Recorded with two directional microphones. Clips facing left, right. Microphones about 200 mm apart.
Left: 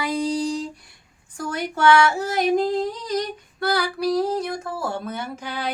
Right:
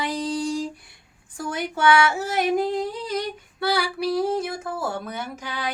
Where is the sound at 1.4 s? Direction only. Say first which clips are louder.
Left 2 dB; 5° right (ahead or behind).